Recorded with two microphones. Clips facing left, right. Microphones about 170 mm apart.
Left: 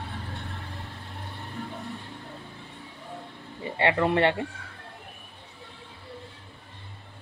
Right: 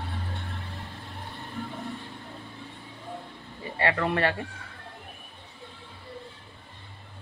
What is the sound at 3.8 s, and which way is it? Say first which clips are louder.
Speech: left 3 dB; 20° left (ahead or behind).